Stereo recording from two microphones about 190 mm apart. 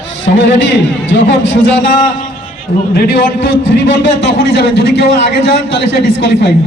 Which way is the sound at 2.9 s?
75° left (ahead or behind).